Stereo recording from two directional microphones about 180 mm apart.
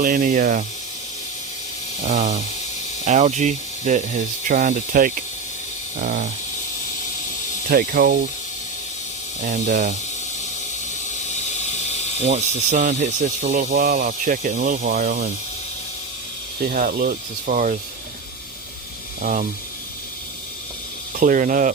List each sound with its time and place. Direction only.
0.0 s speech: 50° right (ahead or behind)
2.0 s speech: 40° right (ahead or behind)
7.7 s speech: 55° right (ahead or behind)
9.4 s speech: 45° right (ahead or behind)
11.1 s a sound: 40° left (ahead or behind)
12.2 s speech: 40° right (ahead or behind)
16.6 s speech: 50° right (ahead or behind)
19.2 s speech: 45° right (ahead or behind)
21.2 s speech: 45° right (ahead or behind)